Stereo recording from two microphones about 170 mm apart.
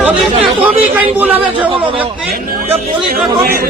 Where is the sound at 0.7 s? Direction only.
10° right (ahead or behind).